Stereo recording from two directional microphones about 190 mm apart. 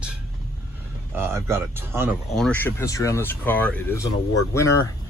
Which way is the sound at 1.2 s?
15° right (ahead or behind).